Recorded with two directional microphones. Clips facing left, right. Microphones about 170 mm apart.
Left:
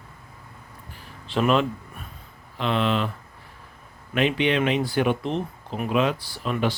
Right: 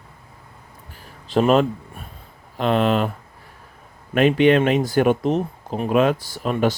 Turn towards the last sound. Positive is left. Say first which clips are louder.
# right 5 dB
turn(degrees=-45)  # may be behind; listen again after turning